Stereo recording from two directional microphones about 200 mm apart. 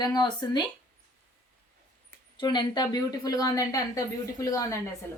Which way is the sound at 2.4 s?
20° left (ahead or behind).